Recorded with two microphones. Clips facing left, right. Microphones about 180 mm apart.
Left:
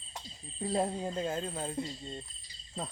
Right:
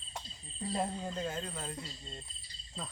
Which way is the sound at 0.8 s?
20° left (ahead or behind).